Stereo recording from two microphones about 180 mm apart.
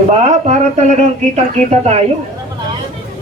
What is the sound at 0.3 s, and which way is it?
Speech, 40° right (ahead or behind).